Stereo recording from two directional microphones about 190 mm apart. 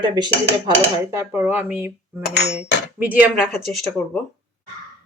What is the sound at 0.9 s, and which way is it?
Speech, 15° right (ahead or behind).